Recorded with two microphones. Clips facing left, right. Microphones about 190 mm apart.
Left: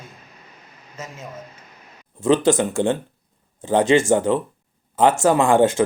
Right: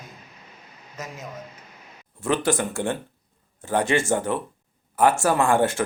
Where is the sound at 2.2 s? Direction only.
20° left (ahead or behind).